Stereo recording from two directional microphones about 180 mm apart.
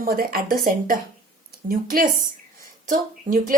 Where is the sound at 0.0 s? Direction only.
55° right (ahead or behind).